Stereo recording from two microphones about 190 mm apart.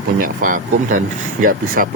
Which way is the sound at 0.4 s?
45° right (ahead or behind).